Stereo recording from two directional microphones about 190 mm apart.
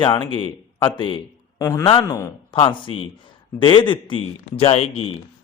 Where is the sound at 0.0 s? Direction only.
25° left (ahead or behind).